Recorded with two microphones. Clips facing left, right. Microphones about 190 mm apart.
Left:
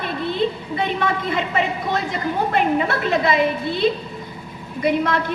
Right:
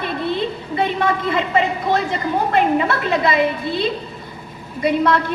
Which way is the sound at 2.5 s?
55° left (ahead or behind).